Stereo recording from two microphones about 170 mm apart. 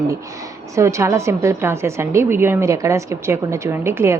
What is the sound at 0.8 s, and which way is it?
A woman's voice, 15° right (ahead or behind).